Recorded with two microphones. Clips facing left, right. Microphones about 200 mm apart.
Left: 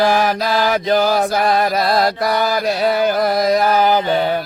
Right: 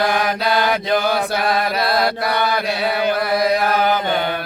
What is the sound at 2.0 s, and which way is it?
Mantra, 60° right (ahead or behind).